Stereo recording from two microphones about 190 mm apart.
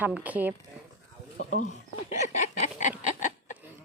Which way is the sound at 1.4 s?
40° left (ahead or behind).